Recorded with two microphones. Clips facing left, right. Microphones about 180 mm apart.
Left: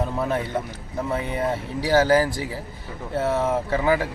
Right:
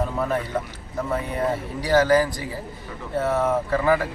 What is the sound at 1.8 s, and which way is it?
A man's voice, 30° left (ahead or behind).